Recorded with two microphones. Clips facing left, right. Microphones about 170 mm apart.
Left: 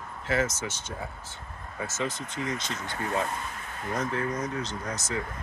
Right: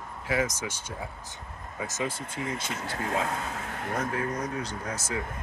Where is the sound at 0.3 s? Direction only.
10° right (ahead or behind).